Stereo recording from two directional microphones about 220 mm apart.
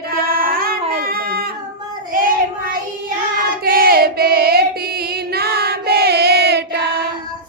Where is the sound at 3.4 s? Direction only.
40° right (ahead or behind).